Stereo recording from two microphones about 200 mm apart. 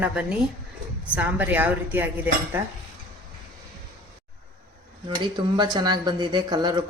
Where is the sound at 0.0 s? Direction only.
5° right (ahead or behind).